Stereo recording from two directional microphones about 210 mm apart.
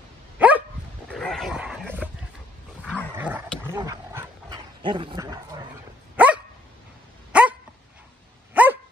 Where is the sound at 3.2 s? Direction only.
10° right (ahead or behind).